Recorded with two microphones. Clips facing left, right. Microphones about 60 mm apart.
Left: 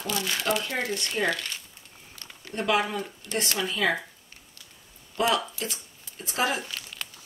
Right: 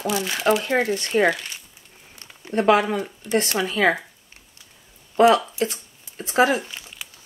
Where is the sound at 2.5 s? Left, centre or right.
Right.